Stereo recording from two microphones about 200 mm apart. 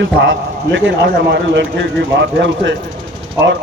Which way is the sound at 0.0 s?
65° right (ahead or behind).